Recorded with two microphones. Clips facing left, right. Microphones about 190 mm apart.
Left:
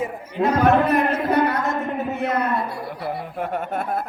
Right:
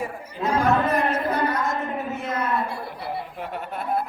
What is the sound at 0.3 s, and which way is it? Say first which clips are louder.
A man's voice: left 4 dB; 65° left (ahead or behind).